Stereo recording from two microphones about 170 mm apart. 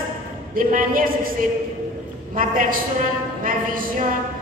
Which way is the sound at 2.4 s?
50° right (ahead or behind).